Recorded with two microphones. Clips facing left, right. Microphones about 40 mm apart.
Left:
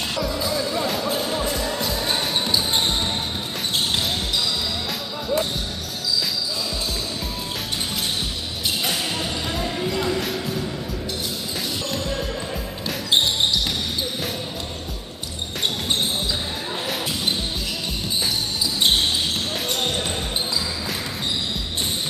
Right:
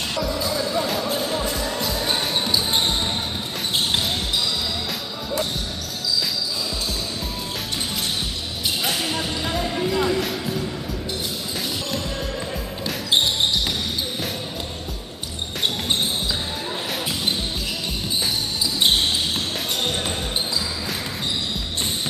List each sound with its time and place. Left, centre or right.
0.1 s music: centre
8.8 s music: centre
18.8 s basketball bounce: centre